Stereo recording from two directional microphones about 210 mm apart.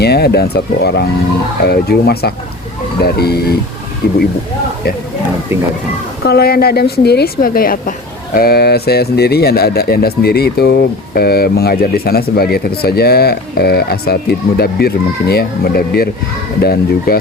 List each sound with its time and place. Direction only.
0.0 s speech: 50° left (ahead or behind)
6.2 s speech: 50° left (ahead or behind)